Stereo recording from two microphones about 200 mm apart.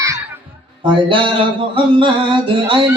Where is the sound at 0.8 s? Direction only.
25° right (ahead or behind).